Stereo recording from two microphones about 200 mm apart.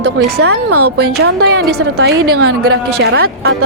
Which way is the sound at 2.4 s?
55° right (ahead or behind).